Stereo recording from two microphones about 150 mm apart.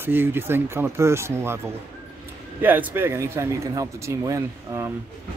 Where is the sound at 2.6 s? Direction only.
10° right (ahead or behind).